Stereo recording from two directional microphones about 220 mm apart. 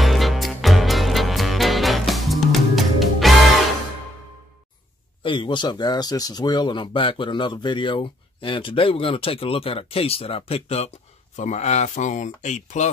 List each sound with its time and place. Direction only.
0.0 s music: centre (ahead or behind)
5.2 s speech: 20° left (ahead or behind)